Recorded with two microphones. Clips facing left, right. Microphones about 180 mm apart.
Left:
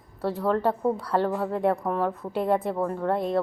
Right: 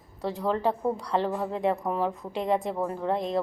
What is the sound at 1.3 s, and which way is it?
Speech, 15° right (ahead or behind).